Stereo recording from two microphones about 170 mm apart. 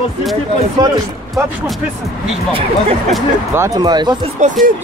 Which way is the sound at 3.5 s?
20° right (ahead or behind).